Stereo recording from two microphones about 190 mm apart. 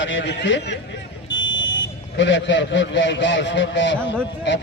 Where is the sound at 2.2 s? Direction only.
70° left (ahead or behind).